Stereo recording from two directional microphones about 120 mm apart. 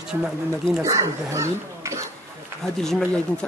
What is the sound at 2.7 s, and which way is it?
Speech, 5° left (ahead or behind).